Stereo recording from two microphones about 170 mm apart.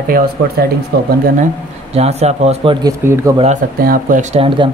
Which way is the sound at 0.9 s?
75° right (ahead or behind).